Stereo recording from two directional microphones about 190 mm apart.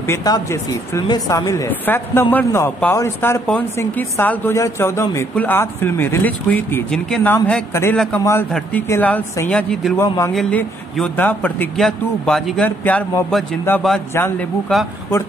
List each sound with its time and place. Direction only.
0.0 s speech: 15° left (ahead or behind)
10.0 s a man's voice: 20° left (ahead or behind)
10.3 s speech: 5° left (ahead or behind)